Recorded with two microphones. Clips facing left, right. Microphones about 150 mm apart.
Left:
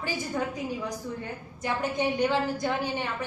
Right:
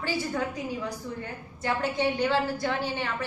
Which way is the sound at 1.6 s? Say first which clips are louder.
Right 1 dB; 15° left (ahead or behind).